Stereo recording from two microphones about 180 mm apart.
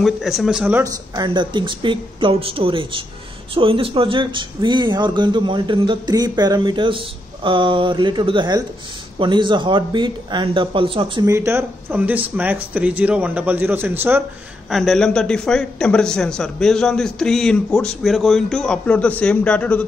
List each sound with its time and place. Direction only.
0.0 s speech: centre (ahead or behind)
1.2 s speech: 25° right (ahead or behind)
11.2 s speech: 15° right (ahead or behind)
14.7 s speech: centre (ahead or behind)